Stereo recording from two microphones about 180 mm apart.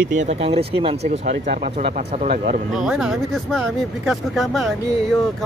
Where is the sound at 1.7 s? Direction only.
35° right (ahead or behind).